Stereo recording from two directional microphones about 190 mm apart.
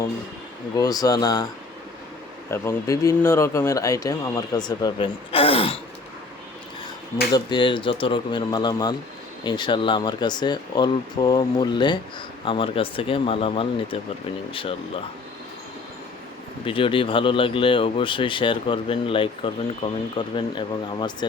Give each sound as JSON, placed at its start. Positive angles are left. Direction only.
{"t": 0.8, "sound": "speech", "side_deg": 20}
{"t": 2.5, "sound": "speech", "side_deg": 15}
{"t": 7.3, "sound": "speech", "side_deg": 25}
{"t": 16.6, "sound": "speech", "side_deg": 30}